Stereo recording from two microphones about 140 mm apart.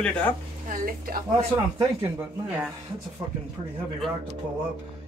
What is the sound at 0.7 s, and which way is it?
Speech, 80° right.